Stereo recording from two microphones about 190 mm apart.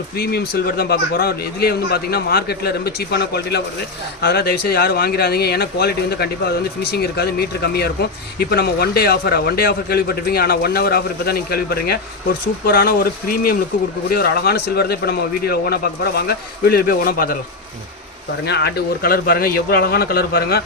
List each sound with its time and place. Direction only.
0.2 s a man's voice: 55° left (ahead or behind)
18.4 s a man's voice: 60° left (ahead or behind)